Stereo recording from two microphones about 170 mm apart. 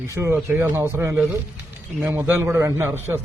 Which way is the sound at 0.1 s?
15° right (ahead or behind).